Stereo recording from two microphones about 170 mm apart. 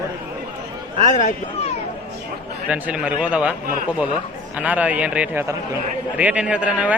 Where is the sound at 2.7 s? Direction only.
10° right (ahead or behind).